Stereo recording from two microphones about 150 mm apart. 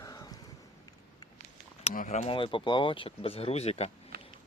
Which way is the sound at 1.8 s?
50° left (ahead or behind).